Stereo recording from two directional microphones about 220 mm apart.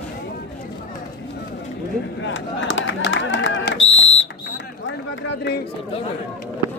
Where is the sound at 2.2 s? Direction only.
60° left (ahead or behind).